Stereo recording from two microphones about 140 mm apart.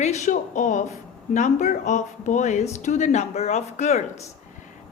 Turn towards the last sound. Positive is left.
turn(degrees=55)  # may be behind; listen again after turning